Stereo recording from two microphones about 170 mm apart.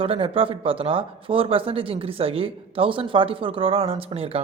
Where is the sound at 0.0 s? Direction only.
30° right (ahead or behind).